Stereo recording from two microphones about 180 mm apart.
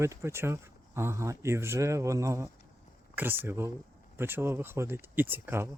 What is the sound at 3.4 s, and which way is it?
Speech, 15° right (ahead or behind).